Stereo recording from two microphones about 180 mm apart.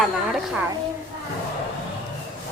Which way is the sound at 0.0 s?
Centre (ahead or behind).